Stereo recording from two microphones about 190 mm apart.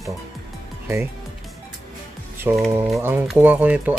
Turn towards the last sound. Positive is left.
turn(degrees=-10)  # may be behind; listen again after turning